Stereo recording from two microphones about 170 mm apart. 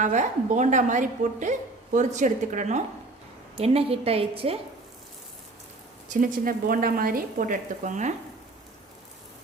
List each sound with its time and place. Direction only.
0.0 s a woman's voice: 45° right (ahead or behind)
6.1 s a woman's voice: 50° right (ahead or behind)